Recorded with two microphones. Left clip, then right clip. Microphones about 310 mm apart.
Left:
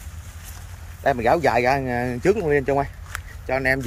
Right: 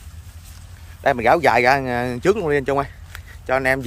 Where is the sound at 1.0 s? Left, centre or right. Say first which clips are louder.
Right 3 dB; centre.